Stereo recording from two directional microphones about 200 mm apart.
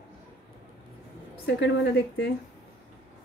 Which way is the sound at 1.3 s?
55° left (ahead or behind).